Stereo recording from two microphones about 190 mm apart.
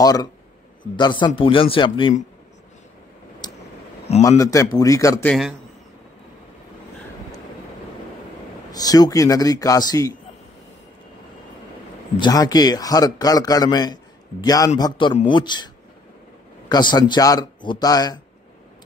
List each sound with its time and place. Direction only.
0.0 s a man's voice: 20° left (ahead or behind)
3.4 s a sound: 20° left (ahead or behind)
4.2 s speech: 15° left (ahead or behind)
8.7 s a man's voice: 20° left (ahead or behind)
12.2 s a man's voice: 20° left (ahead or behind)
16.7 s a man's voice: 20° left (ahead or behind)